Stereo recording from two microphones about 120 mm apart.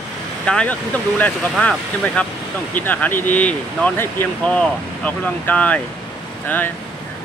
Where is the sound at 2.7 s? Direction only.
15° left (ahead or behind).